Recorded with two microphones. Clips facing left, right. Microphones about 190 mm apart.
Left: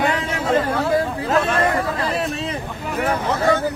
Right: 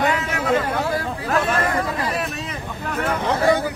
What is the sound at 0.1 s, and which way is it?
Speech, 30° left (ahead or behind).